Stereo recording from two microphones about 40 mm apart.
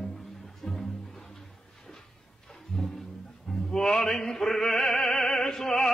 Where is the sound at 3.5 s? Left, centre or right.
Centre.